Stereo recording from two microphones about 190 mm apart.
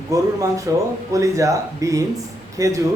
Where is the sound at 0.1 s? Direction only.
15° right (ahead or behind).